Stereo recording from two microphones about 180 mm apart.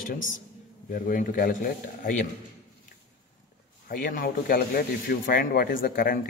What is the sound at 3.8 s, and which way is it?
Speech, 55° left (ahead or behind).